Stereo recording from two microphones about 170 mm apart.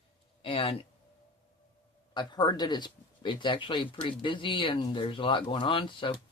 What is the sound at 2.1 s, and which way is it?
Speech, 25° left (ahead or behind).